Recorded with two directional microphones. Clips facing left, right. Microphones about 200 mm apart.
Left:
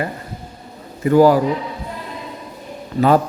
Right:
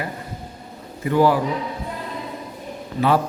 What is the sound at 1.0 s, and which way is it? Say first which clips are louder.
Speech: left 6 dB; 40° left (ahead or behind).